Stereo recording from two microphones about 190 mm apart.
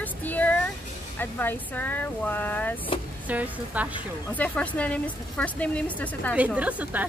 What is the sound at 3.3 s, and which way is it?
Speech, 10° right (ahead or behind).